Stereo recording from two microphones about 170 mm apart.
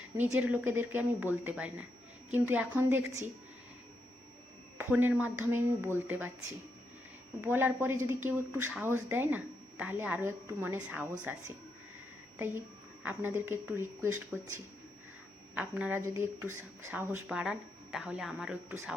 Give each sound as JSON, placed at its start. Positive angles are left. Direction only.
{"t": 0.2, "sound": "a woman's voice", "side_deg": -10}
{"t": 4.8, "sound": "a woman's voice", "side_deg": -10}
{"t": 7.4, "sound": "a woman's voice", "side_deg": -15}
{"t": 13.0, "sound": "a woman's voice", "side_deg": -10}